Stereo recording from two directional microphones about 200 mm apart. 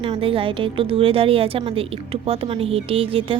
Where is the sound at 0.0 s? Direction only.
25° right (ahead or behind).